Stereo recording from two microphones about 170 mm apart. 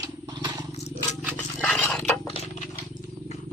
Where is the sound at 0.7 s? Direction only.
40° left (ahead or behind).